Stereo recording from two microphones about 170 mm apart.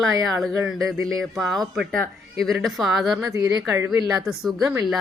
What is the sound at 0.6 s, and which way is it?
Speech, centre (ahead or behind).